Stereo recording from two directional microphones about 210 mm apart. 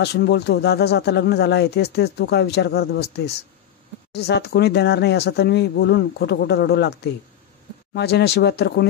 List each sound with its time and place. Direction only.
0.0 s speech: 50° left (ahead or behind)
4.1 s speech: 50° left (ahead or behind)